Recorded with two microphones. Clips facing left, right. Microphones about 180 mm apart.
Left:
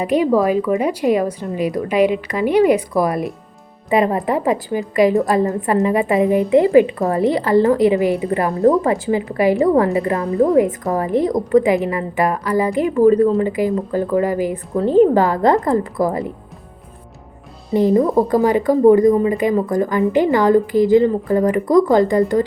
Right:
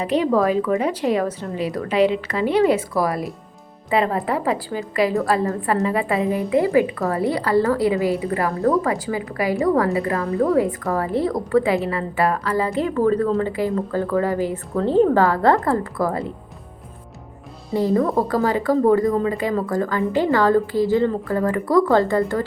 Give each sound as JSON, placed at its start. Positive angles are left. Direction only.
{"t": 0.0, "sound": "a woman's voice", "side_deg": 10}
{"t": 17.7, "sound": "a woman's voice", "side_deg": 20}